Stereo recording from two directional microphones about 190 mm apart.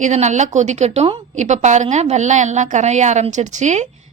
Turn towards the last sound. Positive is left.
turn(degrees=-40)  # may be behind; listen again after turning